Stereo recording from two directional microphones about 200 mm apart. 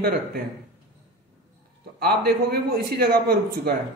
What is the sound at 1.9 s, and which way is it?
A man's voice, 50° right (ahead or behind).